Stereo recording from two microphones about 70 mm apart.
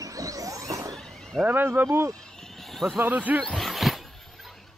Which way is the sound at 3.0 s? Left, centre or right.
Right.